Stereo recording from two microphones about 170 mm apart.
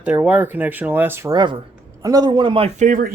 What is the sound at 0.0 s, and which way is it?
Speech, 10° right (ahead or behind).